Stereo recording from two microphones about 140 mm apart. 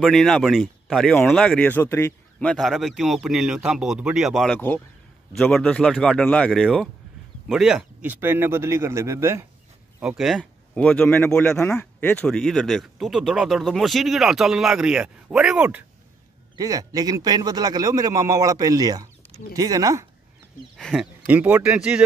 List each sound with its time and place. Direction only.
0.0 s speech: centre (ahead or behind)
2.4 s speech: 5° left (ahead or behind)
4.6 s speech: 10° left (ahead or behind); by 9.5 s 20° right (ahead or behind)
10.0 s speech: centre (ahead or behind)
16.5 s speech: 25° right (ahead or behind)
20.7 s speech: centre (ahead or behind)
21.3 s speech: 15° right (ahead or behind)